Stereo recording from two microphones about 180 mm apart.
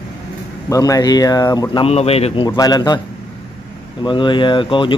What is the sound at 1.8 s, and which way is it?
Speech, 35° left (ahead or behind).